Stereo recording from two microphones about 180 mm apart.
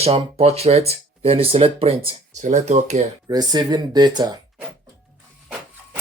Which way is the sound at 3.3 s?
20° right (ahead or behind).